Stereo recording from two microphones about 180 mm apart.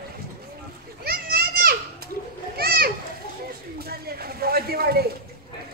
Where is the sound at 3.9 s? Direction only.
60° right (ahead or behind).